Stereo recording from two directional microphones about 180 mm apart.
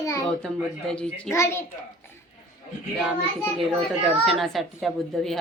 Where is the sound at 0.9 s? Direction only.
5° left (ahead or behind).